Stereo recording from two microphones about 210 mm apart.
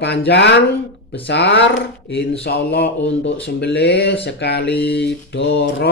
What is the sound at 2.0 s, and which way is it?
Speech, 55° left (ahead or behind).